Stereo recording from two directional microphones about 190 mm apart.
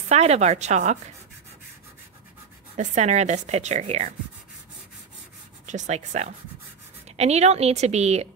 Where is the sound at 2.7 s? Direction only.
40° right (ahead or behind).